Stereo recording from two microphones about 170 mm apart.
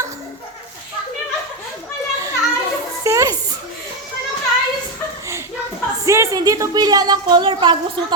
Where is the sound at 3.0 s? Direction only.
20° right (ahead or behind).